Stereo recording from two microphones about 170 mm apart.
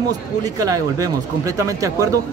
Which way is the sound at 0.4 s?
20° right (ahead or behind).